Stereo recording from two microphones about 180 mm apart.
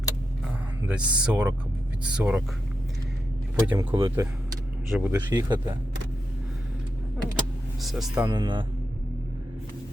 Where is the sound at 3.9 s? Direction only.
25° right (ahead or behind).